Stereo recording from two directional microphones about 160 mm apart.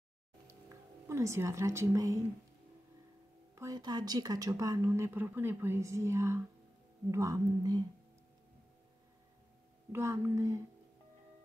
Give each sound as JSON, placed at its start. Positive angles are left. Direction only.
{"t": 0.5, "sound": "speech", "side_deg": -20}
{"t": 3.5, "sound": "speech", "side_deg": -25}
{"t": 9.9, "sound": "speech", "side_deg": -15}